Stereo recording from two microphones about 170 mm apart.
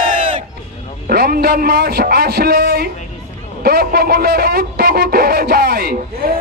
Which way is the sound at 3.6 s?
60° right (ahead or behind).